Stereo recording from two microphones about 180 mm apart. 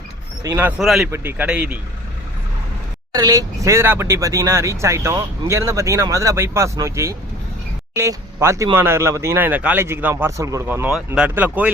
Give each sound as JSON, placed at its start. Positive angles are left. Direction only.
{"t": 0.4, "sound": "speech", "side_deg": -10}
{"t": 0.8, "sound": "speech", "side_deg": 0}
{"t": 1.0, "sound": "speech", "side_deg": -10}
{"t": 3.2, "sound": "speech", "side_deg": -20}